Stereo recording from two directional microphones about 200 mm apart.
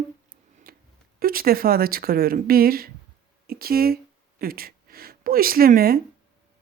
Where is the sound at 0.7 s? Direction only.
50° right (ahead or behind).